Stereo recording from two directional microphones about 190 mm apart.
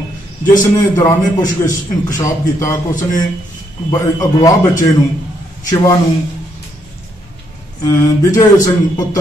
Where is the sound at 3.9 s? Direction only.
15° left (ahead or behind).